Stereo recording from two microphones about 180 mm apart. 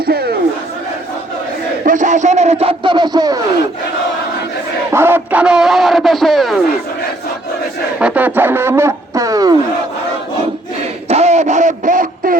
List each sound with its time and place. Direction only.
0.0 s battle cry: 60° right (ahead or behind)
1.8 s a man's voice: 45° right (ahead or behind); by 3.4 s 20° right (ahead or behind)
4.9 s speech: 15° right (ahead or behind)
7.9 s speech: 5° right (ahead or behind)
11.1 s radio: 40° right (ahead or behind)